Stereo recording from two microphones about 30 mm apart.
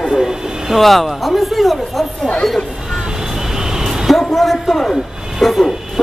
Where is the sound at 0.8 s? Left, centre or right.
Centre.